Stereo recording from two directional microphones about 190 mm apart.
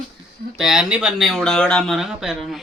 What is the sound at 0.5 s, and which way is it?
Speech, centre (ahead or behind).